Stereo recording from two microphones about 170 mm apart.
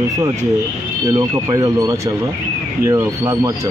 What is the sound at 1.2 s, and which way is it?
Speech, 20° right (ahead or behind).